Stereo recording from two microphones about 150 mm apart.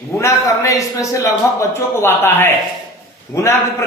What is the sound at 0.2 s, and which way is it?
A man's voice, 20° left (ahead or behind).